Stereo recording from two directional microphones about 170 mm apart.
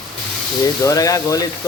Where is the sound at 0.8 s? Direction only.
20° left (ahead or behind).